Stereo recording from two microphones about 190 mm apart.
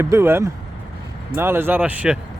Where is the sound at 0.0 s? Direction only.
15° right (ahead or behind).